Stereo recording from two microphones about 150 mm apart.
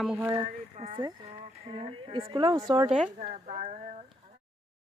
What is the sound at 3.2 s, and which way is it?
Speech, 50° right (ahead or behind).